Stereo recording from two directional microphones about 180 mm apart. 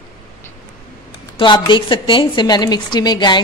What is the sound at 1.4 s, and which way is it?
A woman's voice, 25° left (ahead or behind).